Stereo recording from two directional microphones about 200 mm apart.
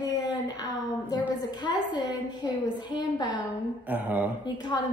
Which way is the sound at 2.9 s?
20° left (ahead or behind).